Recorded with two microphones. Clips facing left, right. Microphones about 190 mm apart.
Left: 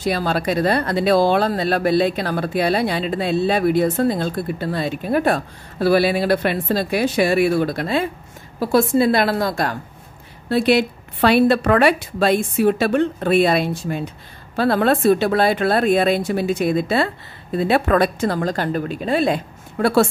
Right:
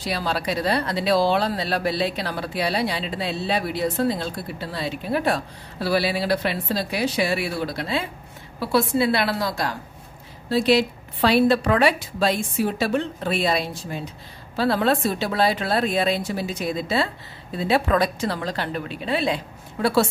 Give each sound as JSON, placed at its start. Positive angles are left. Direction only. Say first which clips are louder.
{"t": 0.0, "sound": "a woman's voice", "louder": "left 5 dB", "side_deg": 50}